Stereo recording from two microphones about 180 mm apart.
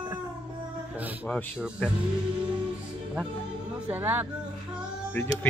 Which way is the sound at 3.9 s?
10° right (ahead or behind).